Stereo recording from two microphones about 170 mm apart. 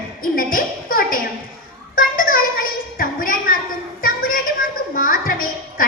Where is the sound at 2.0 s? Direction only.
55° left (ahead or behind).